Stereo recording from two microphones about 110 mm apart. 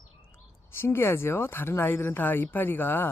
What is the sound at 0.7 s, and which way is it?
Speech, 20° left (ahead or behind).